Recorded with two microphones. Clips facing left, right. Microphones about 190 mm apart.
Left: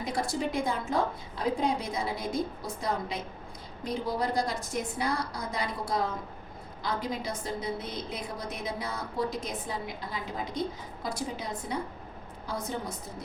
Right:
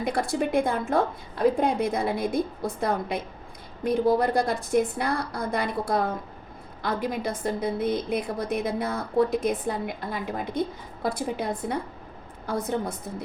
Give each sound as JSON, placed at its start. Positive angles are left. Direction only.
{"t": 0.0, "sound": "a woman's voice", "side_deg": -60}